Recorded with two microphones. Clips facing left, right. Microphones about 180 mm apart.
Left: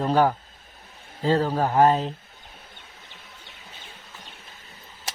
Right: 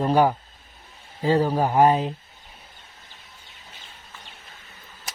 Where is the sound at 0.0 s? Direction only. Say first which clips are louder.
Right 1 dB; 10° right (ahead or behind).